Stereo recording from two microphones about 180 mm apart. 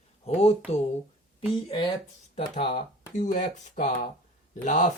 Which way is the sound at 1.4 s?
25° left (ahead or behind).